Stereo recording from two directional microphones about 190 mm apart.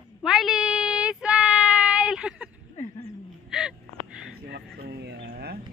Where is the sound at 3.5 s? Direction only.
Centre (ahead or behind).